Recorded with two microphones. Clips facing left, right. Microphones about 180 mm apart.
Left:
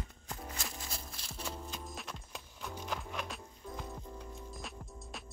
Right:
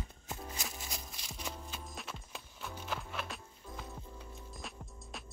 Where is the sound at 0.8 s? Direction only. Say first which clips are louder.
Even; 20° right (ahead or behind).